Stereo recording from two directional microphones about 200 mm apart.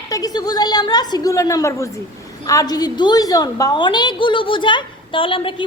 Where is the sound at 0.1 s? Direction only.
20° left (ahead or behind).